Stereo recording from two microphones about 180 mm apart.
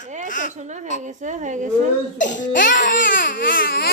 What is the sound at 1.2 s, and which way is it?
Speech, 45° right (ahead or behind).